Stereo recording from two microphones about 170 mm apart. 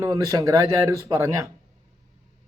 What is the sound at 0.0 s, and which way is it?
Speech, 20° right (ahead or behind).